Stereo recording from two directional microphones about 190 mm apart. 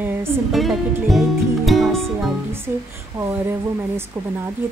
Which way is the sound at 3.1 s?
15° right (ahead or behind).